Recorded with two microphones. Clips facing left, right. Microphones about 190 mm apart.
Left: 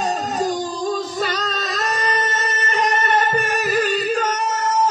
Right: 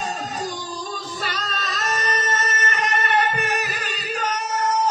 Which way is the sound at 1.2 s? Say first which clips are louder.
Left 6 dB; 35° left (ahead or behind).